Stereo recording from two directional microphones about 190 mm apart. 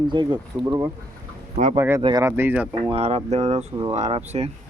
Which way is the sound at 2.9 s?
35° right (ahead or behind).